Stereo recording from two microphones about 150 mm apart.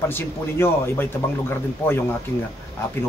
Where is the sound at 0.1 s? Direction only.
15° left (ahead or behind).